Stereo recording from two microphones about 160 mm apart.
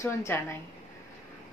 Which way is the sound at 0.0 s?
15° left (ahead or behind).